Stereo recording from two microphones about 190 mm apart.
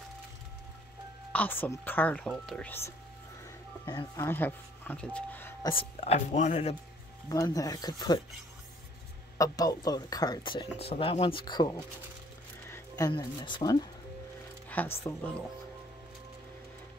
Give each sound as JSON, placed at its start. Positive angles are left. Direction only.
{"t": 1.3, "sound": "speech", "side_deg": 10}
{"t": 4.2, "sound": "speech", "side_deg": 10}
{"t": 5.7, "sound": "speech", "side_deg": 30}
{"t": 7.2, "sound": "speech", "side_deg": 20}
{"t": 9.4, "sound": "speech", "side_deg": 20}
{"t": 14.7, "sound": "speech", "side_deg": 10}